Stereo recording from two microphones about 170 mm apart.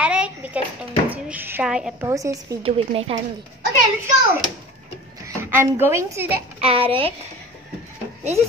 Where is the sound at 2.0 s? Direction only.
20° right (ahead or behind).